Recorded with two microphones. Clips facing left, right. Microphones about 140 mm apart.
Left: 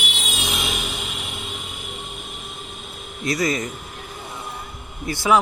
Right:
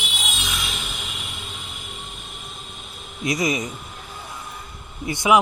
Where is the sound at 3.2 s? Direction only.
20° right (ahead or behind).